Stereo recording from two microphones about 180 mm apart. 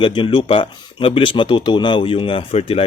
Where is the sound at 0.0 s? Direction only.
25° left (ahead or behind).